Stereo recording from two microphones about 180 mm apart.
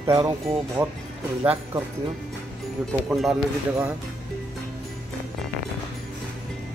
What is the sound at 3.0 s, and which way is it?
Speech, centre (ahead or behind).